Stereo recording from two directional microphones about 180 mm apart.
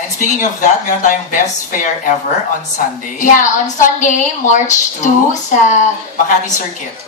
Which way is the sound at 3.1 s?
45° left (ahead or behind).